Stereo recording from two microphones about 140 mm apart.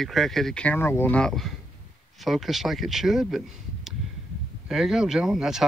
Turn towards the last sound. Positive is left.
turn(degrees=0)  # may be behind; listen again after turning